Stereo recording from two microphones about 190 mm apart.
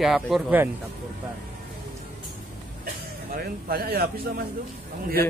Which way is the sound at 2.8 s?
55° right (ahead or behind).